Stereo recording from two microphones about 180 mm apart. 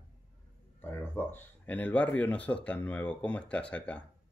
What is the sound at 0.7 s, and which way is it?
Speech, 10° left (ahead or behind).